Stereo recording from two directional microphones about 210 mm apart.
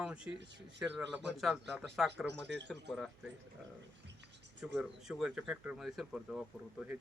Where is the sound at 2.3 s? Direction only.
55° right (ahead or behind).